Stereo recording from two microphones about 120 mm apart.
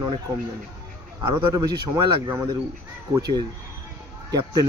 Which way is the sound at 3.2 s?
35° right (ahead or behind).